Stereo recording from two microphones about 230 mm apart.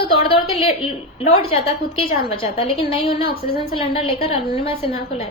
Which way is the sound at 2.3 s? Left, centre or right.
Left.